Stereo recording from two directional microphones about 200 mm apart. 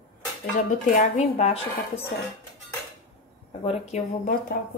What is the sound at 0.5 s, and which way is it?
Speech, 35° left (ahead or behind).